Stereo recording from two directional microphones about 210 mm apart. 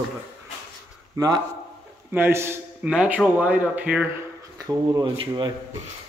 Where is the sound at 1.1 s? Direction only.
15° right (ahead or behind).